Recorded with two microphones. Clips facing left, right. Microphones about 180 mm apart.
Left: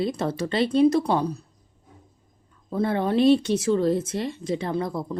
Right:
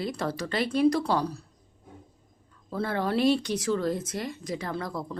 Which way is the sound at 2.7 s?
20° left (ahead or behind).